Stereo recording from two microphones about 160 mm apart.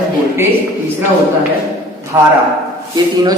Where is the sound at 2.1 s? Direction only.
15° right (ahead or behind).